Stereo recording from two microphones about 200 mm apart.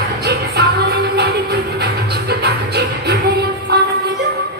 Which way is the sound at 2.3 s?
55° right (ahead or behind).